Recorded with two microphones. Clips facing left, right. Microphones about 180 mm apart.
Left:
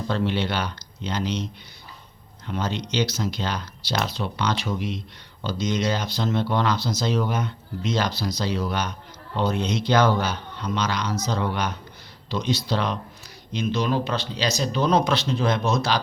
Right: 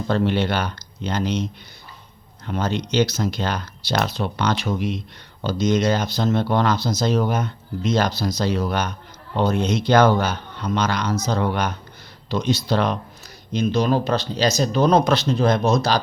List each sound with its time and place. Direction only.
0.1 s speech: 50° right (ahead or behind)
2.5 s speech: 50° right (ahead or behind)